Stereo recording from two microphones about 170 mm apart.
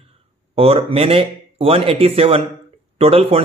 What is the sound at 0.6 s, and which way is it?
Speech, 35° right (ahead or behind).